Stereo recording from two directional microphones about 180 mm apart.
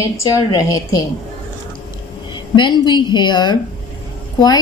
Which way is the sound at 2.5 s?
25° left (ahead or behind).